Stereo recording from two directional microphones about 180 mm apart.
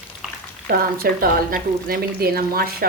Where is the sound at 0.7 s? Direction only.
55° right (ahead or behind).